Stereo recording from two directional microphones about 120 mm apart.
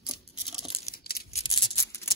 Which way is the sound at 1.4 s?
65° left (ahead or behind).